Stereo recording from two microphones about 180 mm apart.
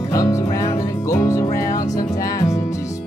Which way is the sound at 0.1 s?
20° left (ahead or behind).